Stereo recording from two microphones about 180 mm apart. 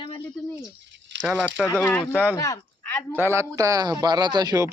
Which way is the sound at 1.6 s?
10° left (ahead or behind).